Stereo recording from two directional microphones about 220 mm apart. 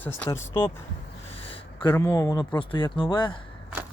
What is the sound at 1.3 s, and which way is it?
Speech, 25° left (ahead or behind).